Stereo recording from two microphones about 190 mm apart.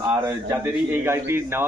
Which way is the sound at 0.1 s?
15° right (ahead or behind).